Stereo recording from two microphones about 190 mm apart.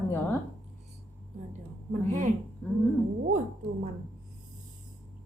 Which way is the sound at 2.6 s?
10° left (ahead or behind).